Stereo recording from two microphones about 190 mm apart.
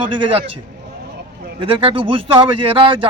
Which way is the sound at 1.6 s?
25° right (ahead or behind).